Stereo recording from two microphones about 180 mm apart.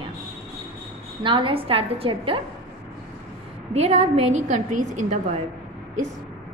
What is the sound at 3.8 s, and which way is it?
Speech, 35° right (ahead or behind).